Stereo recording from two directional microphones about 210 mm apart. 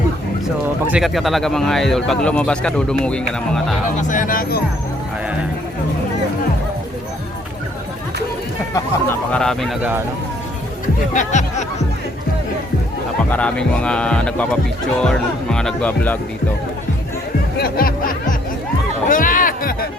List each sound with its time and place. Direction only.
0.9 s speech: 5° right (ahead or behind)
4.0 s speech: 40° left (ahead or behind)
8.7 s speech: 10° left (ahead or behind)
11.1 s speech: 35° left (ahead or behind)
13.3 s speech: 5° left (ahead or behind)
17.6 s speech: 45° left (ahead or behind)
19.0 s music: 40° left (ahead or behind)